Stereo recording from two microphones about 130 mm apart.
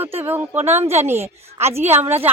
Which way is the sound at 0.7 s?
55° right (ahead or behind).